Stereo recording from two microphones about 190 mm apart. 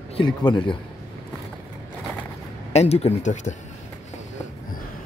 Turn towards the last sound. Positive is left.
turn(degrees=40)  # may be behind; listen again after turning